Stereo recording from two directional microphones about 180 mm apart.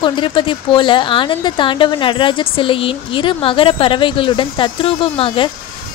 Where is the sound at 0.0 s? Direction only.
25° left (ahead or behind).